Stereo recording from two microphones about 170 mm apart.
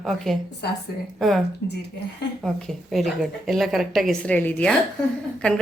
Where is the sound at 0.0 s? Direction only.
Centre (ahead or behind).